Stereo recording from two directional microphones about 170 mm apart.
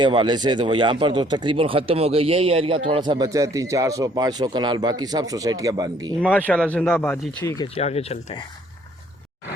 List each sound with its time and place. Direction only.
0.0 s speech: 30° right (ahead or behind)
6.2 s speech: 10° left (ahead or behind)
7.8 s speech: 40° left (ahead or behind)